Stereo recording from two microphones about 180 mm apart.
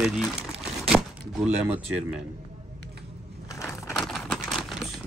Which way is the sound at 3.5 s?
15° left (ahead or behind).